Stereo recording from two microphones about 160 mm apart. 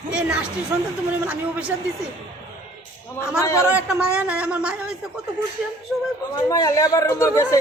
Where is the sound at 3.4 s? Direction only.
20° left (ahead or behind).